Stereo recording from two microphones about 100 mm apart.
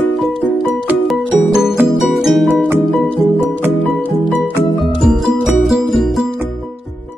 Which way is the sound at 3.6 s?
15° left (ahead or behind).